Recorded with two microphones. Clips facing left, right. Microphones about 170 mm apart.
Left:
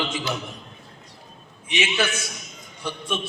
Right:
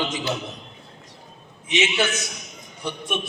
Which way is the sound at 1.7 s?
20° right (ahead or behind).